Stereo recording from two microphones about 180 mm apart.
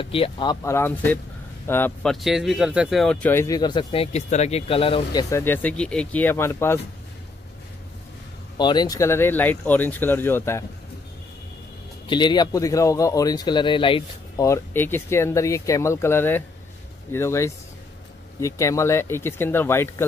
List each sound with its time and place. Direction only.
0.0 s speech: 30° left (ahead or behind); by 2.1 s 10° left (ahead or behind)
2.1 s speech: centre (ahead or behind); by 5.2 s 30° left (ahead or behind)
5.3 s speech: 10° left (ahead or behind)
8.5 s speech: 25° left (ahead or behind)
12.1 s speech: 25° left (ahead or behind)
14.4 s speech: 15° left (ahead or behind)